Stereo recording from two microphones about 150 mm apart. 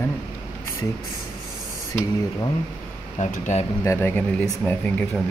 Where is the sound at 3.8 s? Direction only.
15° left (ahead or behind).